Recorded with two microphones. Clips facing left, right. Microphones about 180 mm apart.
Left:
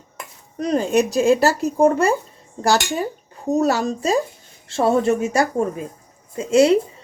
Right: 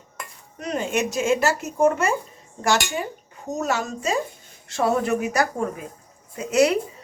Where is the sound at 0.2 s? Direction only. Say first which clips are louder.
Left 9 dB; 35° left (ahead or behind).